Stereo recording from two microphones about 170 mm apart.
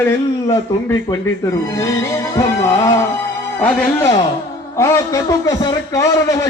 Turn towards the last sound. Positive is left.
turn(degrees=20)  # may be behind; listen again after turning